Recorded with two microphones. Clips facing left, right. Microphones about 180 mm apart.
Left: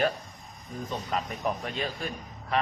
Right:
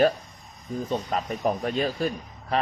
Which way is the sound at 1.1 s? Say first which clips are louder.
Right 2 dB; 40° right (ahead or behind).